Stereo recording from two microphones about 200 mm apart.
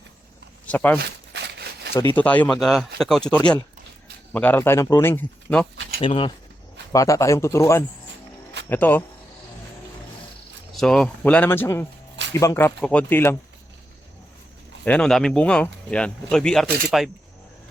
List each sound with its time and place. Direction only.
0.6 s speech: 10° left (ahead or behind)
1.0 s a sound: 55° right (ahead or behind)
2.1 s speech: 5° left (ahead or behind)
6.0 s speech: 25° left (ahead or behind); by 9.0 s 10° left (ahead or behind)
10.8 s speech: 5° left (ahead or behind)
14.8 s speech: 5° left (ahead or behind)